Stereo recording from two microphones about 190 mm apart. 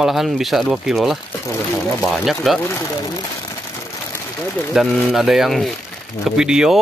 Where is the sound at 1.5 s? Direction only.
15° left (ahead or behind).